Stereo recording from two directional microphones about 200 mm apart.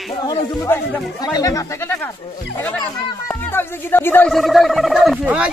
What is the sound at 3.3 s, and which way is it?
Speech, 10° left (ahead or behind).